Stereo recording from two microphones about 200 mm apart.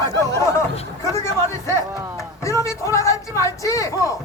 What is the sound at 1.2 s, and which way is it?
Speech, 15° left (ahead or behind).